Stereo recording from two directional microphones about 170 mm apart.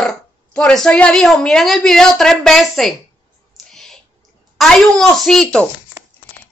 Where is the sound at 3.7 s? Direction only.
5° left (ahead or behind).